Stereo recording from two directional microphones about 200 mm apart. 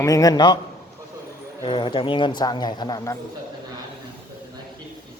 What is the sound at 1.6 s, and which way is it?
Speech, 25° left (ahead or behind).